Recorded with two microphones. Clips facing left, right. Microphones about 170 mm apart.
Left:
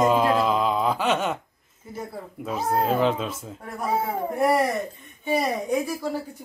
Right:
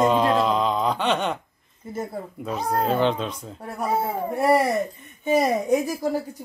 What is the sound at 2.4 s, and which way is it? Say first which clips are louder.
Mantra: even; centre (ahead or behind).